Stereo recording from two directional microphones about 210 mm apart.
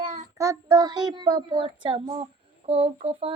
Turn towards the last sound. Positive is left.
turn(degrees=-30)  # may be behind; listen again after turning